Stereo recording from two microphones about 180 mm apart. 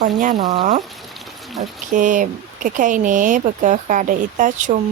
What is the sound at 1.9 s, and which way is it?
Speech, 45° right (ahead or behind).